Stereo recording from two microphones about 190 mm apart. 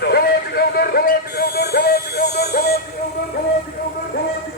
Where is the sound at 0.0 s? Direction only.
55° left (ahead or behind).